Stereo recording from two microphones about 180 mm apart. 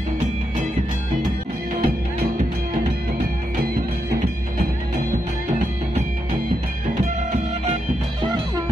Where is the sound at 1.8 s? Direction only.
45° right (ahead or behind).